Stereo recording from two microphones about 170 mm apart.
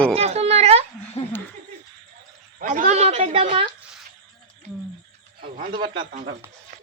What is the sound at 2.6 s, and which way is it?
A woman's voice, 50° right (ahead or behind).